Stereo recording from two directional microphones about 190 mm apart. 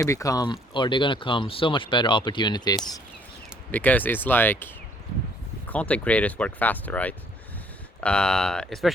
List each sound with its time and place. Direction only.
0.0 s speech: 15° left (ahead or behind)
3.7 s speech: 10° left (ahead or behind)